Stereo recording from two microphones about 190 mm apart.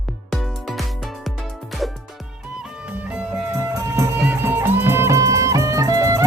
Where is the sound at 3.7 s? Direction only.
15° right (ahead or behind).